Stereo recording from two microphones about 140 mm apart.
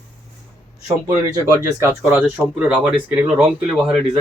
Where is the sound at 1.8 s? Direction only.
15° right (ahead or behind).